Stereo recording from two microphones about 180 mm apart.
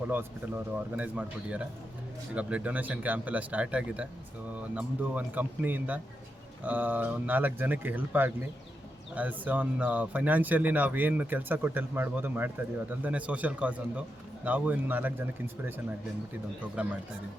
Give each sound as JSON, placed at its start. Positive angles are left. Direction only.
{"t": 0.1, "sound": "speech", "side_deg": -10}
{"t": 16.8, "sound": "speech", "side_deg": -5}